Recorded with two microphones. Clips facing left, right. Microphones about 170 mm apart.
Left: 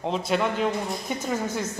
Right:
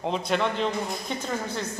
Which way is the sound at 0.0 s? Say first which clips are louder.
Left 1 dB; centre (ahead or behind).